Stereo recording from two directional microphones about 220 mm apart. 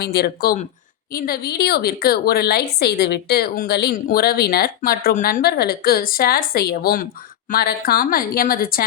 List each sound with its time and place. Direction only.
0.0 s a woman's voice: 45° left (ahead or behind)